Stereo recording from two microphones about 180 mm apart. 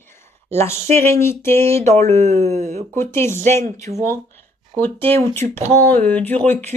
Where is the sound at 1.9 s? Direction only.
40° right (ahead or behind).